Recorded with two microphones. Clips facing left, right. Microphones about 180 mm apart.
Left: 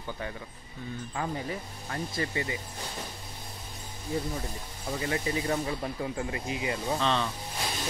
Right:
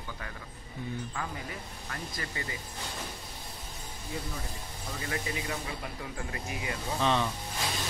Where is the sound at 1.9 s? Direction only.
25° left (ahead or behind).